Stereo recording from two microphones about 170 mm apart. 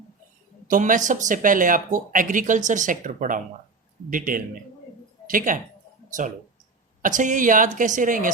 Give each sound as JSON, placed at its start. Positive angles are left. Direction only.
{"t": 0.7, "sound": "a man's voice", "side_deg": -50}
{"t": 7.0, "sound": "speech", "side_deg": -50}